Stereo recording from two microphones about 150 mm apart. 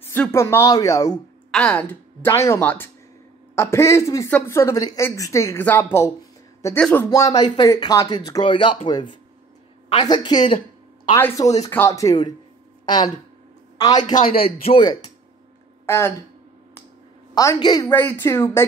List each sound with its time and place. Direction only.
0.0 s speech: 15° left (ahead or behind)
1.5 s a woman's voice: 10° left (ahead or behind); by 8.7 s 30° left (ahead or behind)
10.0 s speech: 30° left (ahead or behind)
11.1 s a man's voice: 20° left (ahead or behind)
14.4 s a man's voice: 40° left (ahead or behind)
15.8 s a sound: 15° left (ahead or behind)
17.3 s speech: 25° left (ahead or behind)